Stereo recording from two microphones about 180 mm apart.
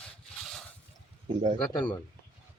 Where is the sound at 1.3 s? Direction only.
40° right (ahead or behind).